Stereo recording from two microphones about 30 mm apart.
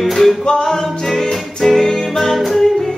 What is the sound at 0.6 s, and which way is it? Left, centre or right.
Music, centre.